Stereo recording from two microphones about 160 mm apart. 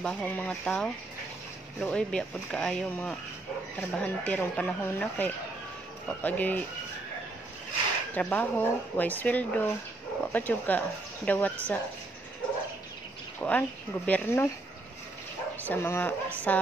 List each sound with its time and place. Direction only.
0.0 s speech: 5° left (ahead or behind)
8.1 s speech: 10° left (ahead or behind)
13.4 s speech: 10° left (ahead or behind)
15.6 s speech: 15° left (ahead or behind)